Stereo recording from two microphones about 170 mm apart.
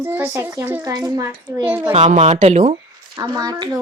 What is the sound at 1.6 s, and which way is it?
Speech, 10° right (ahead or behind).